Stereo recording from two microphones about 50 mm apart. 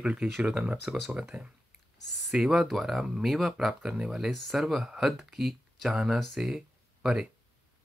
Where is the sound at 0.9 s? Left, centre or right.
Right.